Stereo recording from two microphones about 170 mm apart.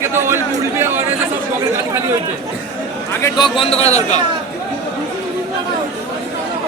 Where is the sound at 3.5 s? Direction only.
35° left (ahead or behind).